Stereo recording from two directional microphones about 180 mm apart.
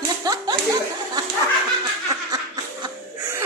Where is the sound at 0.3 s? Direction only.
20° right (ahead or behind).